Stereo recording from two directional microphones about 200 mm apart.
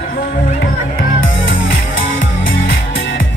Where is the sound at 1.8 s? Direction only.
75° left (ahead or behind).